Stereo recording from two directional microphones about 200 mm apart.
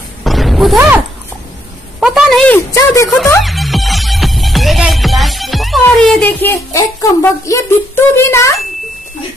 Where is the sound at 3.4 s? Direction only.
Centre (ahead or behind).